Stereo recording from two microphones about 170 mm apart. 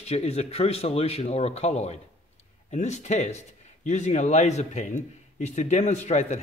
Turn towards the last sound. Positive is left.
turn(degrees=40)  # may be behind; listen again after turning